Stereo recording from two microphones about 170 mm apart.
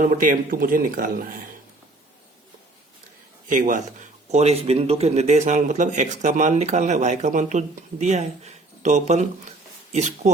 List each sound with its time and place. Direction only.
0.2 s speech: 55° right (ahead or behind)
3.5 s speech: 50° right (ahead or behind)